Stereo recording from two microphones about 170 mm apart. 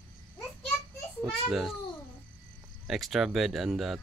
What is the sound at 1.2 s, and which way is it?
Speech, centre (ahead or behind).